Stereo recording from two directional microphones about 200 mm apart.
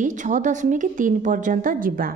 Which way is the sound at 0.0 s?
40° right (ahead or behind).